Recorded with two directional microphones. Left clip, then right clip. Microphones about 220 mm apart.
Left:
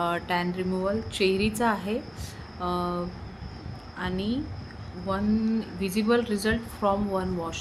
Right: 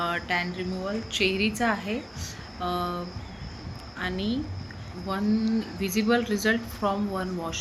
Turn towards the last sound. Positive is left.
turn(degrees=20)  # may be behind; listen again after turning